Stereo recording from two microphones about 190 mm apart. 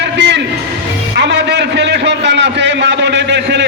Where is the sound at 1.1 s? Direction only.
65° right (ahead or behind).